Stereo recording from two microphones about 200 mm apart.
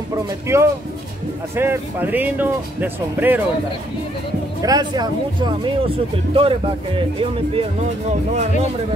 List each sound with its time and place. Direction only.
0.5 s speech: 15° right (ahead or behind)
4.6 s speech: 20° right (ahead or behind); by 8.5 s 35° right (ahead or behind)